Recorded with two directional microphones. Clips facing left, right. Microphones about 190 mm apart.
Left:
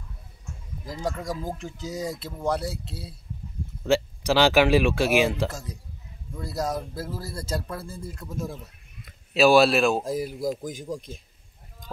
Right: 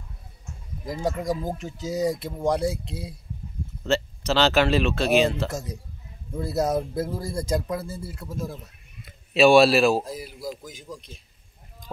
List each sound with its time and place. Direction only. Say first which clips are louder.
0.8 s speech: right 4 dB; 10° right (ahead or behind)
3.8 s speech: left 2 dB; 10° left (ahead or behind)
6.3 s speech: right 5 dB; 20° right (ahead or behind); by 10.0 s centre (ahead or behind)
10.0 s a man's voice: left 7 dB; 45° left (ahead or behind)